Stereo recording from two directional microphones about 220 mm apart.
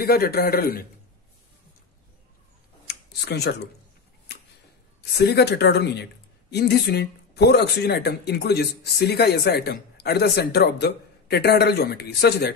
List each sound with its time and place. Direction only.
0.0 s speech: 45° left (ahead or behind)
2.9 s a sound: 50° left (ahead or behind)
5.1 s speech: 50° left (ahead or behind)